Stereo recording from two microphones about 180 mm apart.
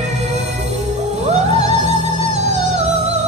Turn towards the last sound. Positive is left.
turn(degrees=-40)  # may be behind; listen again after turning